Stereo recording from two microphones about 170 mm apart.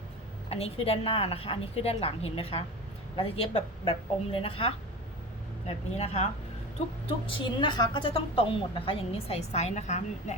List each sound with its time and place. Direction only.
0.5 s a woman's voice: 35° left (ahead or behind)